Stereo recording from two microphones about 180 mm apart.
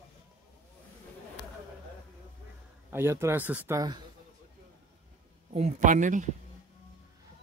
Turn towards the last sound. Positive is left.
turn(degrees=-45)  # may be behind; listen again after turning